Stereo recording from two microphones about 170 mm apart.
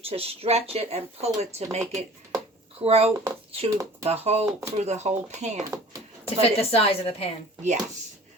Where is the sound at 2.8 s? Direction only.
35° right (ahead or behind).